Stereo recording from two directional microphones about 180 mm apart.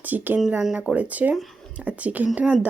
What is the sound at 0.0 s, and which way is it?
Speech, 10° right (ahead or behind).